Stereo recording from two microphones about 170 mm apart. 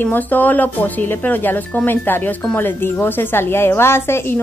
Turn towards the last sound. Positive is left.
turn(degrees=15)  # may be behind; listen again after turning